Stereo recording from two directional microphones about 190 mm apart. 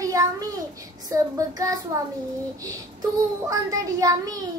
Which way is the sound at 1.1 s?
20° right (ahead or behind).